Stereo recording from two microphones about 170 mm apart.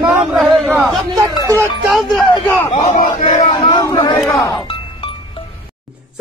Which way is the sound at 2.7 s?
45° left (ahead or behind).